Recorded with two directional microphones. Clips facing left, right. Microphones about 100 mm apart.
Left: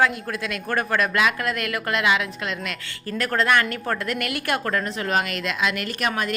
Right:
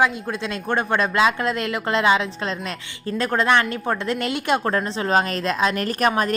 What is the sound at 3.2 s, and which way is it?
A woman's voice, 20° right (ahead or behind).